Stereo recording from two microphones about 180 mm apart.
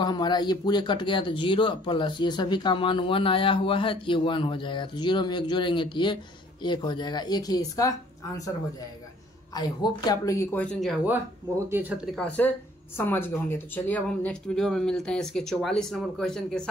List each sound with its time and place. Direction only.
0.0 s speech: 25° left (ahead or behind)
9.5 s speech: 25° left (ahead or behind); by 11.0 s 5° left (ahead or behind)
11.7 s speech: 10° right (ahead or behind)
12.2 s speech: 10° left (ahead or behind)